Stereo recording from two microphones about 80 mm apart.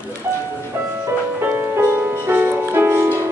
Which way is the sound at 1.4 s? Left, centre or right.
Right.